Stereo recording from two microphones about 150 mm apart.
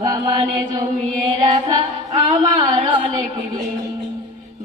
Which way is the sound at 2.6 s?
35° right (ahead or behind).